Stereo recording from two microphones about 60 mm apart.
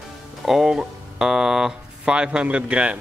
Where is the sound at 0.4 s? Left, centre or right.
Centre.